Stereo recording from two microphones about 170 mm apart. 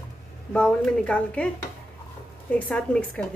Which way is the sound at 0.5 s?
5° left (ahead or behind).